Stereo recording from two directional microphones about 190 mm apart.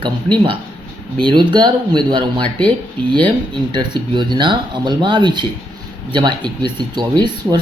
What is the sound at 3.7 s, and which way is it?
Speech, 25° right (ahead or behind).